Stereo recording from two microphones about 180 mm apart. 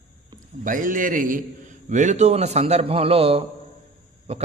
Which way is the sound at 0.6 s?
50° right (ahead or behind).